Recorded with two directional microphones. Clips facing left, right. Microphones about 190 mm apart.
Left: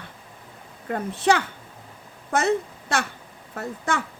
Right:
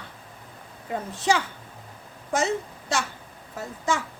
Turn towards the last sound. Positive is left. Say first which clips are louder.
# even
turn(degrees=60)  # may be behind; listen again after turning